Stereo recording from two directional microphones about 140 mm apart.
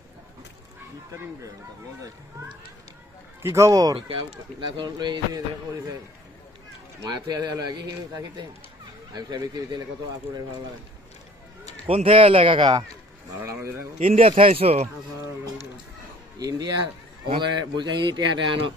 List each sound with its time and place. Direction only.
3.4 s speech: 20° right (ahead or behind)
4.6 s a man's voice: 30° right (ahead or behind)
7.0 s a man's voice: 30° right (ahead or behind)
11.9 s a man's voice: 40° right (ahead or behind)
13.4 s speech: 15° right (ahead or behind)
14.1 s speech: 50° right (ahead or behind)
16.3 s a man's voice: 25° right (ahead or behind)